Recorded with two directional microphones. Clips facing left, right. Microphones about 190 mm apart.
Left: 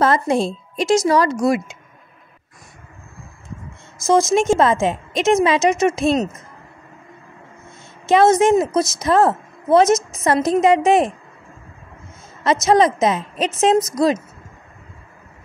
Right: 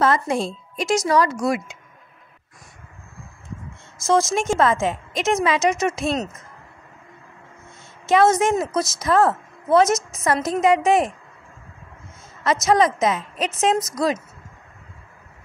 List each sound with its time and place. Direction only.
0.0 s a woman's voice: 30° left (ahead or behind)
4.0 s a woman's voice: 15° left (ahead or behind)
8.1 s a woman's voice: 25° left (ahead or behind)
12.6 s a woman's voice: 25° left (ahead or behind)